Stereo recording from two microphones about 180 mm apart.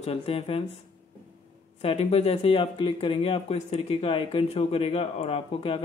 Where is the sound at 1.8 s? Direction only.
35° left (ahead or behind).